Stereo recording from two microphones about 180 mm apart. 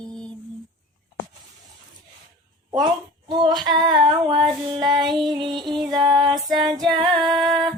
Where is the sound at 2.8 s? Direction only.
25° right (ahead or behind).